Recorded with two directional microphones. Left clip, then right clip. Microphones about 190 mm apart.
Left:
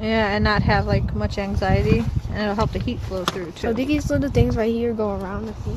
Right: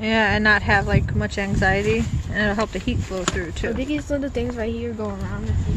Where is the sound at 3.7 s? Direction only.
50° left (ahead or behind).